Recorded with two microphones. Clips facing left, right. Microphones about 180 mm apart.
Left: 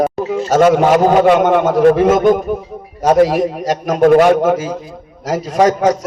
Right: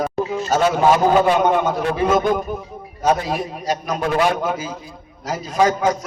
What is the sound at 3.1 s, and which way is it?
Speech, 70° left (ahead or behind).